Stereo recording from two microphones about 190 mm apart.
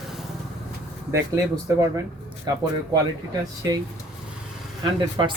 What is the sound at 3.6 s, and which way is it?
Speech, 20° right (ahead or behind).